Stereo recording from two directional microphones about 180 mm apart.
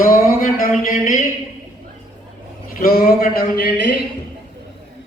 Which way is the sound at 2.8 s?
55° left (ahead or behind).